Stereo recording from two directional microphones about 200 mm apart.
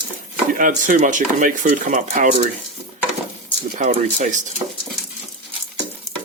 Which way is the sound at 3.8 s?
40° right (ahead or behind).